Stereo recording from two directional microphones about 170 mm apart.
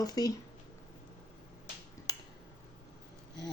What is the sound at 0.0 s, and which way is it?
Speech, 20° left (ahead or behind).